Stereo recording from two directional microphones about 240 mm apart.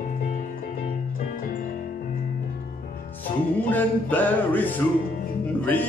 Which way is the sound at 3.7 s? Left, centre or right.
Centre.